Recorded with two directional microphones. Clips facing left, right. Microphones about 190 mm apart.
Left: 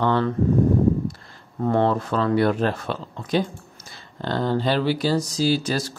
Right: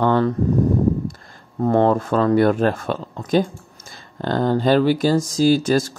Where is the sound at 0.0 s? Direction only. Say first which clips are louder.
Right 4 dB; 45° right (ahead or behind).